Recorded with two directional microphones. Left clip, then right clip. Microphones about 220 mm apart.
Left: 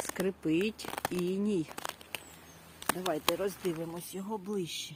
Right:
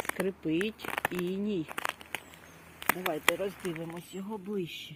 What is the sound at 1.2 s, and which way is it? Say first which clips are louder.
Speech: left 1 dB; 15° left (ahead or behind).